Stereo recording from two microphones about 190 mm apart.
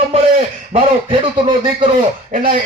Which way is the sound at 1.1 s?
25° right (ahead or behind).